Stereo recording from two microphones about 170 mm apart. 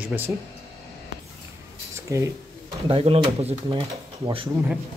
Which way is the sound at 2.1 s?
20° right (ahead or behind).